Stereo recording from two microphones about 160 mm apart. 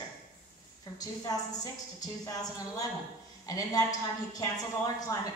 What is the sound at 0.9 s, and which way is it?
A woman's voice, 25° left (ahead or behind).